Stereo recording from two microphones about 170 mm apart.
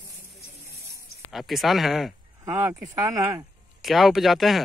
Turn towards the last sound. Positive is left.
turn(degrees=0)  # may be behind; listen again after turning